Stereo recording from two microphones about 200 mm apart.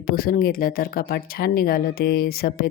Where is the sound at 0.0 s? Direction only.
45° left (ahead or behind).